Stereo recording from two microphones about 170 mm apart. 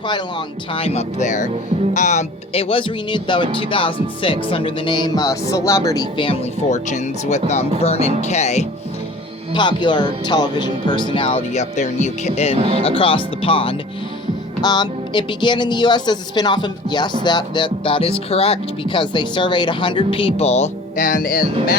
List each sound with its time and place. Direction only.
0.1 s speech: 30° left (ahead or behind)
9.5 s speech: 25° left (ahead or behind)
12.5 s speech: 35° right (ahead or behind)
12.8 s speech: 30° left (ahead or behind); by 21.4 s 55° left (ahead or behind)